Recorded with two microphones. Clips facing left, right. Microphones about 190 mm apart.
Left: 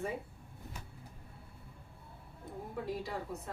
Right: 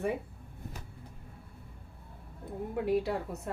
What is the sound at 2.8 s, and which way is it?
Speech, 65° right (ahead or behind).